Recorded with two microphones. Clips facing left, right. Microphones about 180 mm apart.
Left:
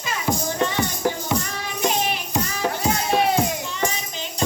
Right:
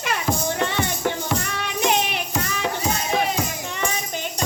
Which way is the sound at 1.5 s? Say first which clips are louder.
Right 2 dB; 65° right (ahead or behind).